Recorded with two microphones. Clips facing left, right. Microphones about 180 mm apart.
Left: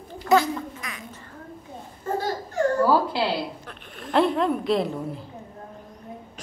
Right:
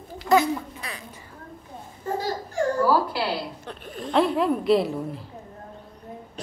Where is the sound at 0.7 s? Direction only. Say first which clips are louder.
Even; 35° right (ahead or behind).